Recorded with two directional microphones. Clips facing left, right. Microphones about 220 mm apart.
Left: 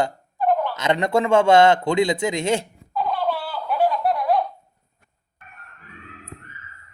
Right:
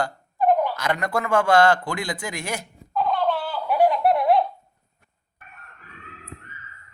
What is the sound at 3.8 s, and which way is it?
Laughter, 20° right (ahead or behind).